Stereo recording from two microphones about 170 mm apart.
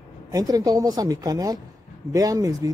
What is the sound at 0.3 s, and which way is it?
Speech, 20° right (ahead or behind).